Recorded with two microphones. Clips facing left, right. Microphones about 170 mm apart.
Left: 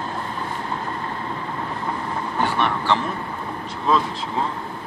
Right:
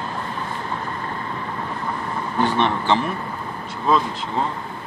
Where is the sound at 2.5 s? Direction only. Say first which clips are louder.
Right 1 dB; 20° right (ahead or behind).